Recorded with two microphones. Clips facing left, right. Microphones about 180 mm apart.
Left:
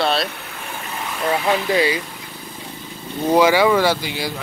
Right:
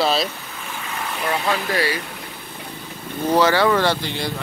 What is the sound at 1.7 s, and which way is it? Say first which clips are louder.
Speech: left 6 dB; 20° left (ahead or behind).